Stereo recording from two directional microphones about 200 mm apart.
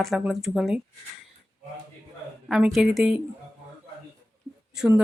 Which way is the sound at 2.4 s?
Centre (ahead or behind).